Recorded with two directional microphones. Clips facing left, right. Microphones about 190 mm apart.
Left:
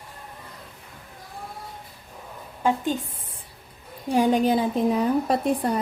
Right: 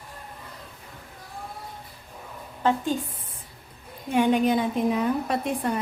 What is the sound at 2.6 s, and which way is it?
Speech, 10° left (ahead or behind).